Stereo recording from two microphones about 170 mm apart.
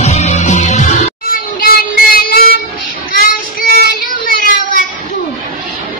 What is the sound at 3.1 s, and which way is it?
Child singing, 60° left (ahead or behind).